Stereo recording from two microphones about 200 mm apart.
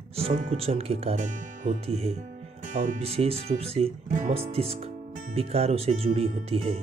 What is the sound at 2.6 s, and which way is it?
Speech, 40° right (ahead or behind).